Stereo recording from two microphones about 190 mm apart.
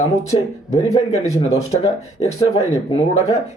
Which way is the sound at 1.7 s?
30° left (ahead or behind).